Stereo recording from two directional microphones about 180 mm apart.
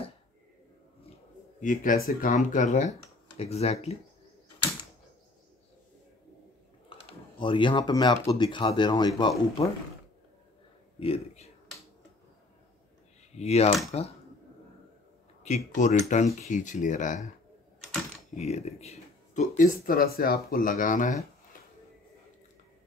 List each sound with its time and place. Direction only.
1.6 s speech: 45° left (ahead or behind)
6.9 s speech: 30° left (ahead or behind)
11.0 s a man's voice: 35° left (ahead or behind)
13.4 s speech: 35° left (ahead or behind)
15.4 s speech: 40° left (ahead or behind)
18.3 s speech: 35° left (ahead or behind)